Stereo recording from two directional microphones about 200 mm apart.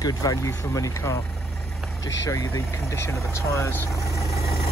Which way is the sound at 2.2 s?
15° left (ahead or behind).